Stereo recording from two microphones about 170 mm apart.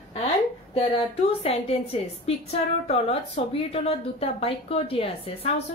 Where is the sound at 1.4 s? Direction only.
35° left (ahead or behind).